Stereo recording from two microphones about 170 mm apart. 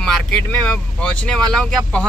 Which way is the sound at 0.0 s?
5° left (ahead or behind).